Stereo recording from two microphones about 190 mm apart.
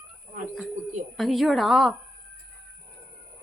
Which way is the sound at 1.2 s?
Centre (ahead or behind).